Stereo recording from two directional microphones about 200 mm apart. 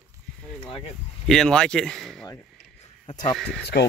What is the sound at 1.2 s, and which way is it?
Speech, 5° left (ahead or behind).